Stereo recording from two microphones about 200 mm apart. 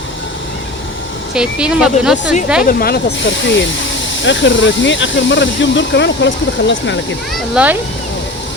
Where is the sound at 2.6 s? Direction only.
50° left (ahead or behind).